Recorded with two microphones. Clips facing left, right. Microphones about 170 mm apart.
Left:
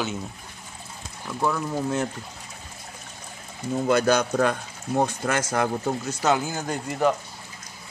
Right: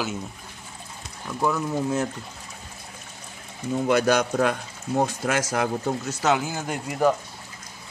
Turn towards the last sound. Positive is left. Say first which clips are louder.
# right 1 dB
turn(degrees=-5)  # may be behind; listen again after turning